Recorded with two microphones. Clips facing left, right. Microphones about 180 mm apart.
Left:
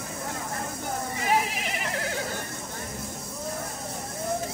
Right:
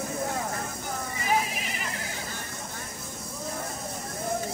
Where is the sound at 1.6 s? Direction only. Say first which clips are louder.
Left 4 dB; 70° left (ahead or behind).